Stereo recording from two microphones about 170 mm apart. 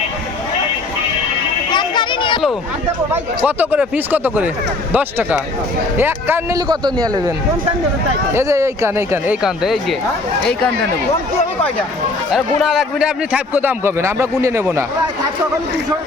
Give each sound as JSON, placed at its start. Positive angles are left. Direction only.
{"t": 1.7, "sound": "a sound", "side_deg": 25}
{"t": 3.1, "sound": "a man's voice", "side_deg": -10}
{"t": 6.6, "sound": "a man's voice", "side_deg": -25}
{"t": 12.3, "sound": "a man's voice", "side_deg": 0}